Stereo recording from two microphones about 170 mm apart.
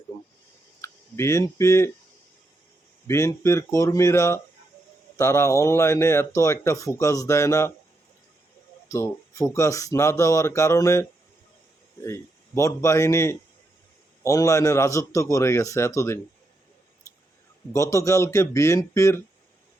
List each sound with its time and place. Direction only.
0.1 s a sound: 20° left (ahead or behind)
3.1 s speech: 15° left (ahead or behind)
8.9 s speech: 20° left (ahead or behind)
12.0 s a man's voice: 15° left (ahead or behind)
17.7 s speech: 20° left (ahead or behind)